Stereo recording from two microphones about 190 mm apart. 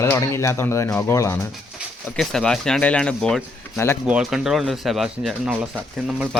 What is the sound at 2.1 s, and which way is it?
Speech, 5° left (ahead or behind).